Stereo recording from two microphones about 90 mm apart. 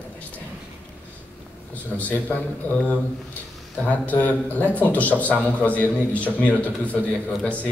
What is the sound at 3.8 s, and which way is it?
A man's voice, 15° left (ahead or behind).